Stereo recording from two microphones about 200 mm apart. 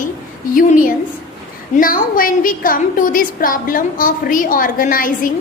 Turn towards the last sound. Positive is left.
turn(degrees=45)  # may be behind; listen again after turning